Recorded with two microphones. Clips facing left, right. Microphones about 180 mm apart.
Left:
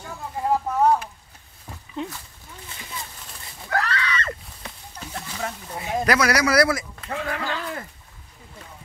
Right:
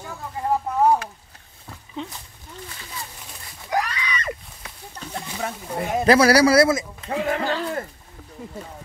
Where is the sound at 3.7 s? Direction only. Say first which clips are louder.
Even; 15° right (ahead or behind).